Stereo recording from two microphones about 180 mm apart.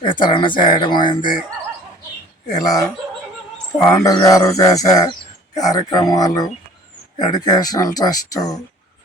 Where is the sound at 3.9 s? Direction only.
20° left (ahead or behind).